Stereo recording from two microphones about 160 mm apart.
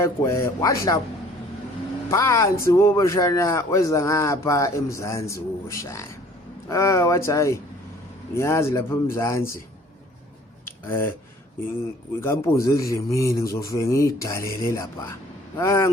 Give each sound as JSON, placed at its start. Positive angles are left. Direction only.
{"t": 0.0, "sound": "speech", "side_deg": 15}
{"t": 2.0, "sound": "speech", "side_deg": 15}
{"t": 10.7, "sound": "a sound", "side_deg": 15}
{"t": 12.2, "sound": "speech", "side_deg": 15}